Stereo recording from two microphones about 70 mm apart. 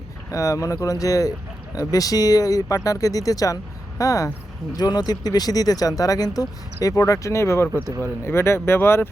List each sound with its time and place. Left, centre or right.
0.3 s speech: left
4.7 s speech: left
6.8 s speech: left